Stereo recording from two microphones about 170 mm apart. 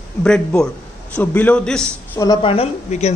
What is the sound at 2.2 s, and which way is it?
Speech, 30° left (ahead or behind).